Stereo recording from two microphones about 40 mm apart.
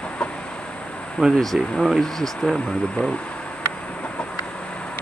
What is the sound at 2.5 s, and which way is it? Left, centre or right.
Speech, centre.